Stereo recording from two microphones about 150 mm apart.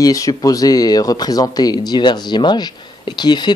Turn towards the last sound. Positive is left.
turn(degrees=30)  # may be behind; listen again after turning